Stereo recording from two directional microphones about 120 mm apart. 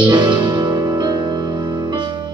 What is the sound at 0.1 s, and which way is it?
Music, 40° right (ahead or behind).